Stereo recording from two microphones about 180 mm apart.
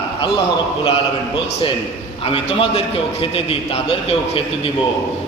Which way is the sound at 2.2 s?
30° left (ahead or behind).